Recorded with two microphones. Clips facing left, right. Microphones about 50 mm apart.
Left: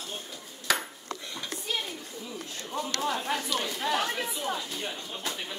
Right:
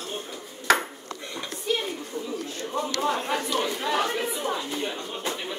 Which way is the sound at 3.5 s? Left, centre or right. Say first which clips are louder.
Right 4 dB; right.